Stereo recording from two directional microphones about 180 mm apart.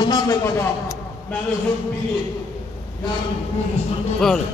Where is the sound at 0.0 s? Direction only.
20° left (ahead or behind).